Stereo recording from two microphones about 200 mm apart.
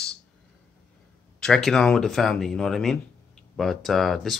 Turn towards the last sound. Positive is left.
turn(degrees=0)  # may be behind; listen again after turning